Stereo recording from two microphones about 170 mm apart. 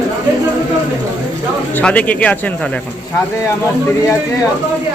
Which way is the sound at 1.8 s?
10° left (ahead or behind).